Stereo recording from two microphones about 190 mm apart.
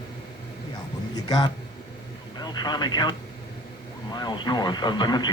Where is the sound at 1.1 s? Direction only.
20° left (ahead or behind).